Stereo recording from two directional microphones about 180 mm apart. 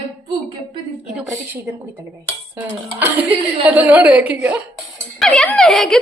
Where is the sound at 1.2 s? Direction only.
10° right (ahead or behind).